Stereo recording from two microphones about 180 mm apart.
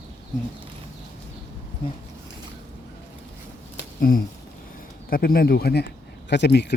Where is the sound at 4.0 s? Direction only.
55° left (ahead or behind).